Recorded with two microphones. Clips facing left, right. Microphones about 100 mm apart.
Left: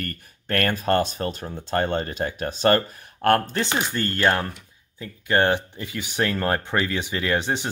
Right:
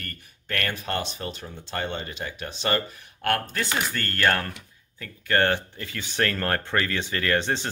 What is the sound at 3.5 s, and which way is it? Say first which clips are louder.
Speech: left 3 dB; 25° left (ahead or behind).